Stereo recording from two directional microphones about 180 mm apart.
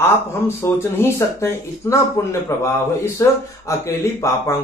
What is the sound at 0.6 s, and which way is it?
Speech, 15° left (ahead or behind).